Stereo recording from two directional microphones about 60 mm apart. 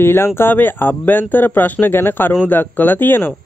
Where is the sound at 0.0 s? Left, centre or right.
Left.